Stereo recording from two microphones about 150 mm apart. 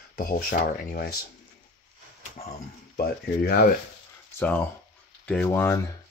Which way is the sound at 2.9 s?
90° left.